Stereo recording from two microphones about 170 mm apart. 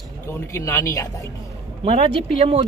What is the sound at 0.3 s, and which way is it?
Speech, 15° left (ahead or behind).